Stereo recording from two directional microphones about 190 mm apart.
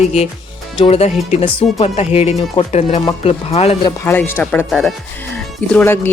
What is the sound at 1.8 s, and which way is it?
Speech, 30° left (ahead or behind).